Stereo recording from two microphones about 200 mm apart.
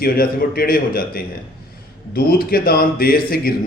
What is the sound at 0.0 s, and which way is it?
Speech, 50° left (ahead or behind).